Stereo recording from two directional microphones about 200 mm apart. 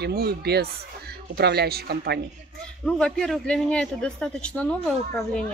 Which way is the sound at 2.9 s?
5° left (ahead or behind).